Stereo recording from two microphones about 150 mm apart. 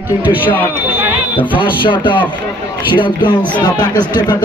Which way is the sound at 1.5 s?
35° left (ahead or behind).